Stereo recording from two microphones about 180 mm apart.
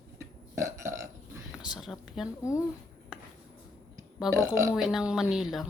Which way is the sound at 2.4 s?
15° left (ahead or behind).